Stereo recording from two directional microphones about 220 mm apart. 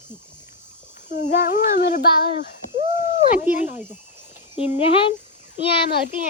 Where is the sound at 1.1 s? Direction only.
35° left (ahead or behind).